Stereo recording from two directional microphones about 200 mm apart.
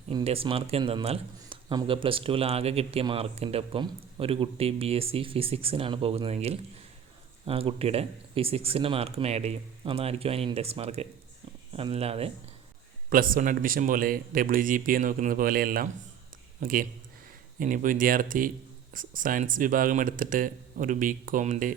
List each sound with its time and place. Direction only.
0.1 s speech: 25° right (ahead or behind)
13.1 s speech: 45° right (ahead or behind)